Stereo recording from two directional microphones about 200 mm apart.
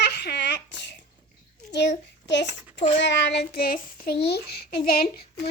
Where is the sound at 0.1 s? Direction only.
60° left (ahead or behind).